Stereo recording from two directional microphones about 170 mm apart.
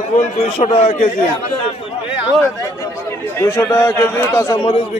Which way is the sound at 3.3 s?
15° left (ahead or behind).